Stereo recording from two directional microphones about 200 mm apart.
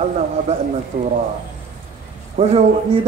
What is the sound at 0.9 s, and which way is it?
Speech, 40° right (ahead or behind).